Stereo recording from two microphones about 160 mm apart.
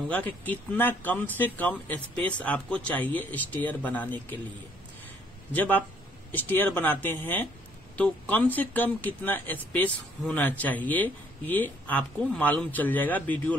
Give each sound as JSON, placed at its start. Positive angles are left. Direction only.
{"t": 0.1, "sound": "speech", "side_deg": 10}
{"t": 6.3, "sound": "speech", "side_deg": 10}